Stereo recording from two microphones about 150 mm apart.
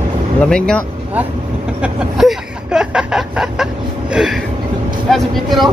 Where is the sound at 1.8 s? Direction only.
5° right (ahead or behind).